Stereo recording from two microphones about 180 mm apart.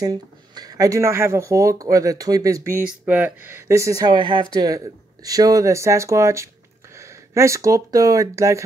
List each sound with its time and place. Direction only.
0.0 s speech: 20° right (ahead or behind)